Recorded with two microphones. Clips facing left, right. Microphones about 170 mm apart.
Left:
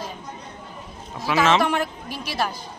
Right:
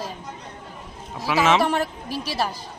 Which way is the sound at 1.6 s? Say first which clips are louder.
Even; 35° right (ahead or behind).